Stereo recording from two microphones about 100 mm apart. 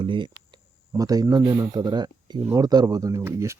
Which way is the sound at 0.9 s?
35° right (ahead or behind).